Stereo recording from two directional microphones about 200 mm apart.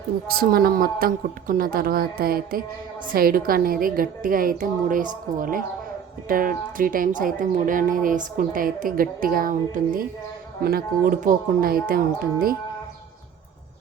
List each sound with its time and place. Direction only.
0.3 s speech: 45° right (ahead or behind)